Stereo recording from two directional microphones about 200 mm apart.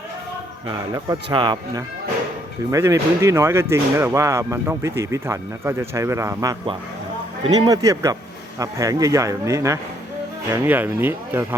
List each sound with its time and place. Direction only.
0.7 s speech: 20° right (ahead or behind)